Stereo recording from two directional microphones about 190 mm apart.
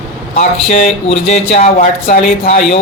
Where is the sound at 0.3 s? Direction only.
35° left (ahead or behind).